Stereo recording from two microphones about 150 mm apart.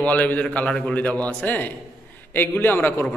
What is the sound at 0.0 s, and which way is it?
A man's voice, 10° left (ahead or behind).